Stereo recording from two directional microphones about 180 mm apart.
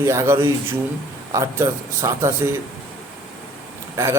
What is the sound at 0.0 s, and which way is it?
Speech, 15° right (ahead or behind).